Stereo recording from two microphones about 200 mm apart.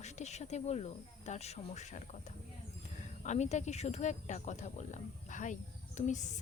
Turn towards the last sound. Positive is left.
turn(degrees=35)  # may be behind; listen again after turning